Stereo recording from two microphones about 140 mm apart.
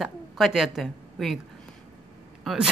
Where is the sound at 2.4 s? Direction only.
Centre (ahead or behind).